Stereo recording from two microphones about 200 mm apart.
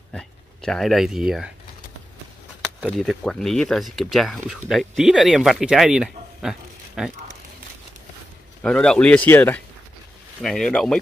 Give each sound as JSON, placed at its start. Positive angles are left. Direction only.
{"t": 0.1, "sound": "speech", "side_deg": 5}
{"t": 2.8, "sound": "speech", "side_deg": 0}
{"t": 8.6, "sound": "speech", "side_deg": 5}